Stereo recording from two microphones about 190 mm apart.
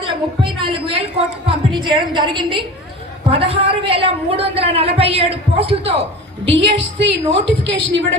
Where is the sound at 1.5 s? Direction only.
25° right (ahead or behind).